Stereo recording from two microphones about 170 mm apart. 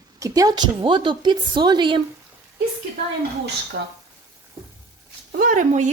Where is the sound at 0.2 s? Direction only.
20° right (ahead or behind).